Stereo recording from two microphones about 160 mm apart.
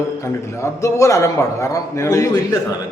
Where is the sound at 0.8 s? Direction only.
20° left (ahead or behind).